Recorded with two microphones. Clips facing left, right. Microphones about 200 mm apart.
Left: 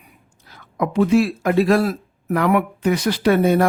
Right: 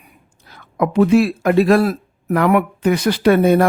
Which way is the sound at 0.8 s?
60° right (ahead or behind).